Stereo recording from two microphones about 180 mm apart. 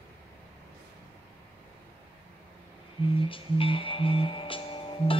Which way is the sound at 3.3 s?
30° left (ahead or behind).